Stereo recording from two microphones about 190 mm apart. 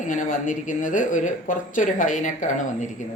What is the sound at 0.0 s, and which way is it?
Speech, 40° left (ahead or behind).